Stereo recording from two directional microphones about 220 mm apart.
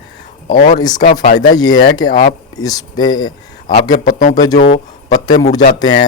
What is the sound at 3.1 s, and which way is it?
Speech, 70° left (ahead or behind).